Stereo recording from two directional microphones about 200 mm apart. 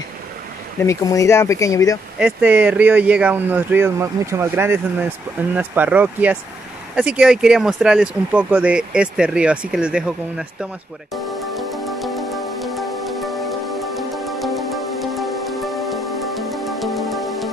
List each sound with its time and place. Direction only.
0.7 s speech: 15° left (ahead or behind)
2.1 s speech: 5° right (ahead or behind)
11.5 s music: centre (ahead or behind)